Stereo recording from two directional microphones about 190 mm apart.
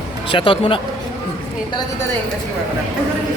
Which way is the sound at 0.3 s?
25° left (ahead or behind).